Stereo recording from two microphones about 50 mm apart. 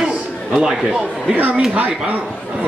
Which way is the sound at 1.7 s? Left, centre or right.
Right.